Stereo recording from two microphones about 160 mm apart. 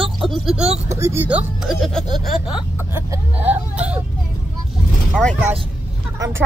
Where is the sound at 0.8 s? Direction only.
20° right (ahead or behind); by 2.4 s centre (ahead or behind).